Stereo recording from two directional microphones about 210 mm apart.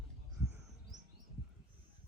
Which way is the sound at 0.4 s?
10° right (ahead or behind).